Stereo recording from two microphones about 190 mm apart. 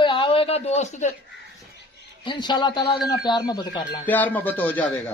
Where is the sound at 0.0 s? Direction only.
25° left (ahead or behind).